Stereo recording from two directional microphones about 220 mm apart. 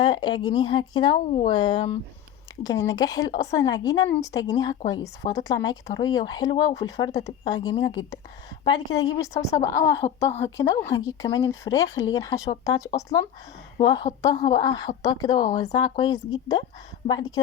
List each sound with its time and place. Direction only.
0.0 s a woman's voice: 20° left (ahead or behind)
9.4 s a woman's voice: 30° left (ahead or behind)
9.8 s a woman's voice: 15° left (ahead or behind)